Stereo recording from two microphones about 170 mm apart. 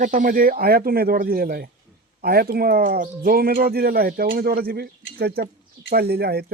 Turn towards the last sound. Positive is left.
turn(degrees=-70)  # may be behind; listen again after turning